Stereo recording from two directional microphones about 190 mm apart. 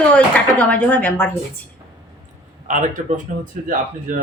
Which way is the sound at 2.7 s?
40° right (ahead or behind).